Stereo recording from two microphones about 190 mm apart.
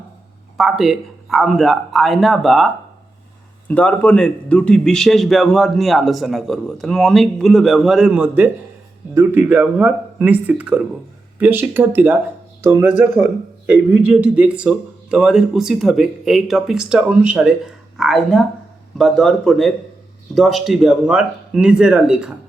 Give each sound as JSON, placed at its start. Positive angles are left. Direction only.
{"t": 0.5, "sound": "a man's voice", "side_deg": 0}
{"t": 13.1, "sound": "a man's voice", "side_deg": 40}
{"t": 13.7, "sound": "a man's voice", "side_deg": -10}